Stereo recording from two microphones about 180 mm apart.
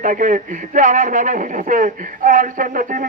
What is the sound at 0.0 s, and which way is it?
Speech, 45° right (ahead or behind).